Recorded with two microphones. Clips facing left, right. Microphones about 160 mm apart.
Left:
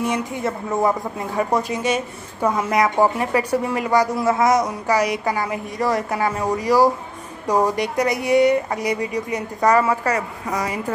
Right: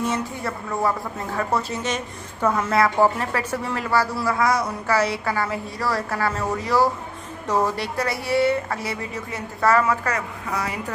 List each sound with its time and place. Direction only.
0.0 s a woman's voice: 20° left (ahead or behind)